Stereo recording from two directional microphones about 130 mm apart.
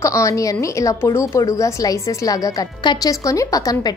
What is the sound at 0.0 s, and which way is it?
A woman's voice, 25° left (ahead or behind).